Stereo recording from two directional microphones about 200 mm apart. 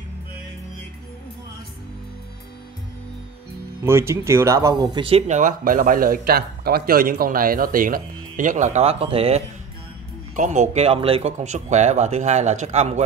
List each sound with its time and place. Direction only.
3.8 s speech: 10° right (ahead or behind); by 13.0 s 35° right (ahead or behind)